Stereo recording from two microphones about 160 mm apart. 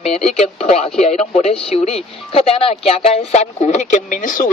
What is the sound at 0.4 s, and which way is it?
Speech, 40° left (ahead or behind).